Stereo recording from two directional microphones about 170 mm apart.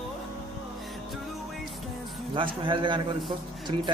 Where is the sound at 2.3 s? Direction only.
30° right (ahead or behind).